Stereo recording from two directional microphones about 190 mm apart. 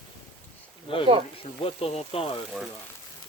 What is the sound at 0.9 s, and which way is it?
Speech, 25° left (ahead or behind).